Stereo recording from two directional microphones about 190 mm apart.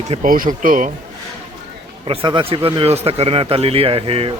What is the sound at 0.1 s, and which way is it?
Speech, 45° right (ahead or behind).